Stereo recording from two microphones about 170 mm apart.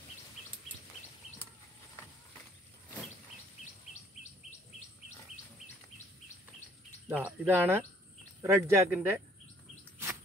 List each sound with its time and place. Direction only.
7.1 s speech: 10° right (ahead or behind)